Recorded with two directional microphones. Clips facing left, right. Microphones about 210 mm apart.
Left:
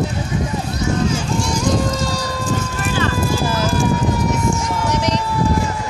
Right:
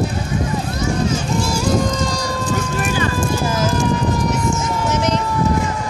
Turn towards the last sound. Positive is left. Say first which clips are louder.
# right 1 dB
turn(degrees=-5)  # may be behind; listen again after turning